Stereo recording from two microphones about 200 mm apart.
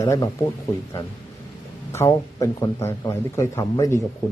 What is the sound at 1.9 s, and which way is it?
A man's voice, 15° left (ahead or behind).